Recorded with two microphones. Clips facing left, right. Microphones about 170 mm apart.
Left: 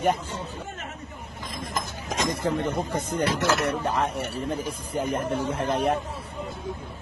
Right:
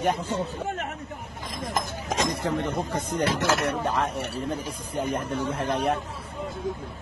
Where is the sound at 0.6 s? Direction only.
65° right (ahead or behind).